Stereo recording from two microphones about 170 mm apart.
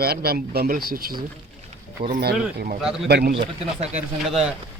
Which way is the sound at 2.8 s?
5° right (ahead or behind).